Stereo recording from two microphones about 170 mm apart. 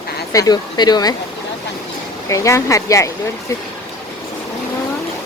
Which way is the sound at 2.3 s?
20° left (ahead or behind).